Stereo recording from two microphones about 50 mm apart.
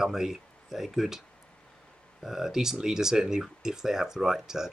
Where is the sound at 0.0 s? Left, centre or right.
Centre.